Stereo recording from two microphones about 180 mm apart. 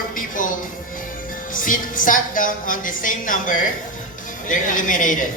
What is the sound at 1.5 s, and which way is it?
Speech, 50° left (ahead or behind).